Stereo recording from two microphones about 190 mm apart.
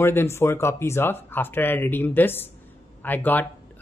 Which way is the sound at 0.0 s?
10° left (ahead or behind).